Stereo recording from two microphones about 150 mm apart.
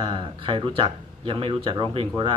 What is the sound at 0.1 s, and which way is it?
Speech, 35° right (ahead or behind).